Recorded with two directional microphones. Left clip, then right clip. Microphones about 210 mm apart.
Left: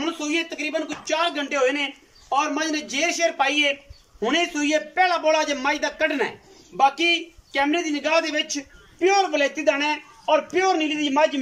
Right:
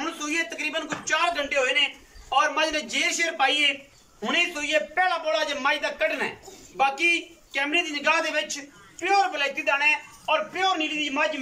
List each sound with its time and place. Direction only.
0.0 s a man's voice: 20° left (ahead or behind)